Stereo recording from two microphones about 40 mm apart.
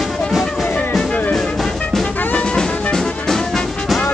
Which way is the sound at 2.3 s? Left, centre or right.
Left.